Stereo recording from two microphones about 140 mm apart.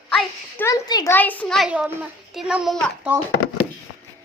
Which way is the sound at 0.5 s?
25° left (ahead or behind).